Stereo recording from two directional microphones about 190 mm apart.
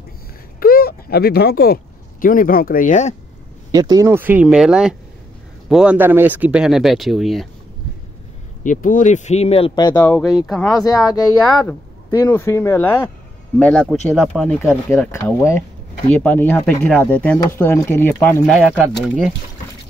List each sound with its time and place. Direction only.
0.6 s a sound: 50° left (ahead or behind)
2.2 s speech: 45° left (ahead or behind)
3.7 s speech: 20° right (ahead or behind); by 7.4 s centre (ahead or behind)
8.6 s speech: 45° left (ahead or behind); by 10.0 s 20° left (ahead or behind)
10.0 s speech: 5° left (ahead or behind)
10.7 s speech: 20° left (ahead or behind)
12.3 s speech: 15° left (ahead or behind)
14.9 s speech: 15° left (ahead or behind)
18.5 s speech: centre (ahead or behind)